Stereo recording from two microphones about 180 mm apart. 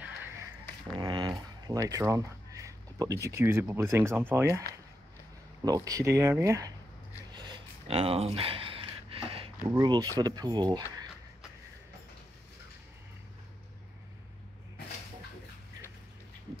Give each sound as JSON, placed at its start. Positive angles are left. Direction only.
{"t": 0.9, "sound": "dog", "side_deg": -25}
{"t": 1.7, "sound": "speech", "side_deg": -20}
{"t": 5.7, "sound": "speech", "side_deg": -20}
{"t": 7.2, "sound": "a sound", "side_deg": -25}
{"t": 9.8, "sound": "speech", "side_deg": -20}